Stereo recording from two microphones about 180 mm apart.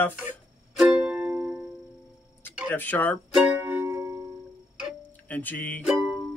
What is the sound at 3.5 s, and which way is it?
Music, 10° right (ahead or behind).